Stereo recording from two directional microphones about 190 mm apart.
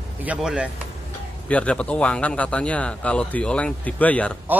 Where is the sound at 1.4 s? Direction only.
5° left (ahead or behind).